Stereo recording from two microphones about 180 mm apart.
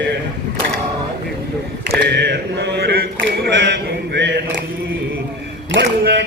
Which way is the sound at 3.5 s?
85° right.